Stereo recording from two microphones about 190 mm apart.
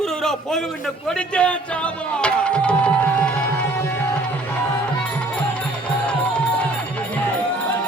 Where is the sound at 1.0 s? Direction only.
5° left (ahead or behind).